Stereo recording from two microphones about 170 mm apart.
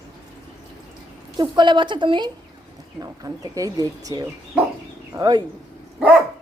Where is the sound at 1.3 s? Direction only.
25° right (ahead or behind).